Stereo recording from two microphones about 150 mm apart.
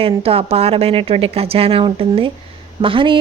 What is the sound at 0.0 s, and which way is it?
A woman's voice, 40° right (ahead or behind).